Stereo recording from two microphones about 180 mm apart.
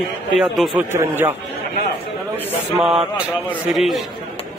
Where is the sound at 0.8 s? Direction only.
10° right (ahead or behind).